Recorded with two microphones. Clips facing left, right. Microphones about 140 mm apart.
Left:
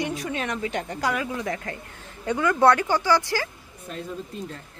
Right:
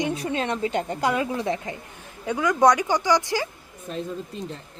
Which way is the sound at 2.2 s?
10° right (ahead or behind).